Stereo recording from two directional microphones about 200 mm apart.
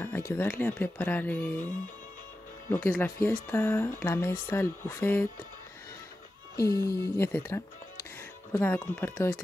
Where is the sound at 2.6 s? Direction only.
15° left (ahead or behind).